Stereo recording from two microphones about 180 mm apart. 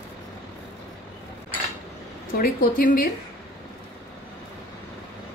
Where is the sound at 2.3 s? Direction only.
55° left (ahead or behind).